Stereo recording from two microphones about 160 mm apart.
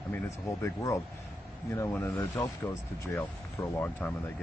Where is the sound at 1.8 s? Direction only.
15° left (ahead or behind).